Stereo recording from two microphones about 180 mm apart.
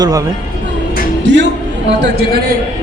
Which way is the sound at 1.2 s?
75° right (ahead or behind).